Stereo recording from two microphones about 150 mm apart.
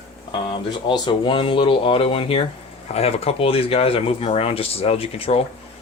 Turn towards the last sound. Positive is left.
turn(degrees=40)  # may be behind; listen again after turning